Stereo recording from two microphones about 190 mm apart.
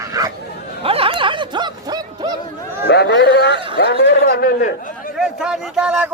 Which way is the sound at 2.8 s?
60° left (ahead or behind).